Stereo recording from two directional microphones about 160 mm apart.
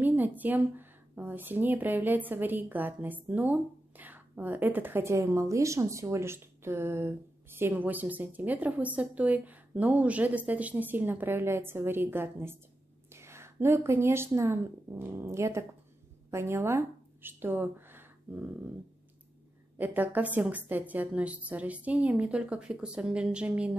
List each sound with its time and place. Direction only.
0.0 s a woman's voice: 10° right (ahead or behind)
19.8 s a woman's voice: 10° right (ahead or behind)